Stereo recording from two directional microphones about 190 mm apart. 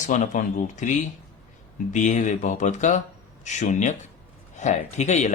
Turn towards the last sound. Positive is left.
turn(degrees=40)  # may be behind; listen again after turning